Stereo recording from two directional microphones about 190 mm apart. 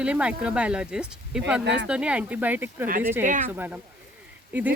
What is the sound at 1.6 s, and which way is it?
Speech, 65° right (ahead or behind).